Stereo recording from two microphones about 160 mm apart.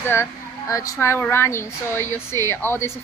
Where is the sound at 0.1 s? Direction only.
20° left (ahead or behind).